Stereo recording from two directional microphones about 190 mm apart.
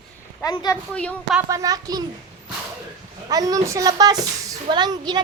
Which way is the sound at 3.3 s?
20° right (ahead or behind).